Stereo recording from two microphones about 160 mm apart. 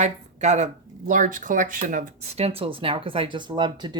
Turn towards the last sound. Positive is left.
turn(degrees=-25)  # may be behind; listen again after turning